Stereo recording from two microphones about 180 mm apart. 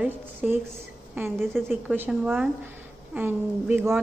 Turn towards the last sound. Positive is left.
turn(degrees=-10)  # may be behind; listen again after turning